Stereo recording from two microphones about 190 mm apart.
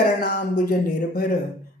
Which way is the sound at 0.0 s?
55° left (ahead or behind).